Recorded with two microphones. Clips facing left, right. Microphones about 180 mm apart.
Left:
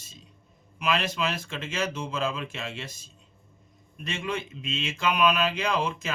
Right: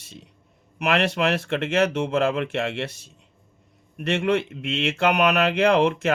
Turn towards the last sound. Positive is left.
turn(degrees=-70)  # may be behind; listen again after turning